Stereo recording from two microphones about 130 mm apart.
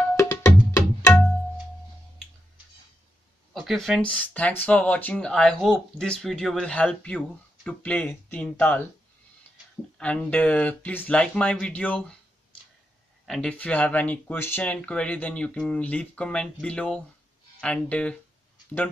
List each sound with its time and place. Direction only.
0.1 s music: 20° left (ahead or behind)
3.5 s speech: centre (ahead or behind)
9.9 s speech: 10° left (ahead or behind)
13.2 s speech: 5° left (ahead or behind)